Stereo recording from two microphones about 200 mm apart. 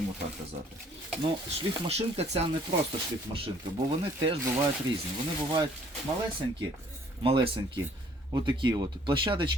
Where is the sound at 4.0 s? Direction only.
25° right (ahead or behind).